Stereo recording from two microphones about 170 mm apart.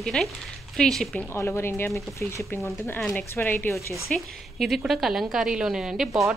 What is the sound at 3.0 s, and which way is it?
Speech, 5° left (ahead or behind).